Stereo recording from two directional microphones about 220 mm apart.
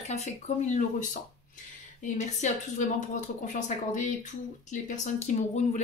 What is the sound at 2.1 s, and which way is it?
Speech, 30° left (ahead or behind).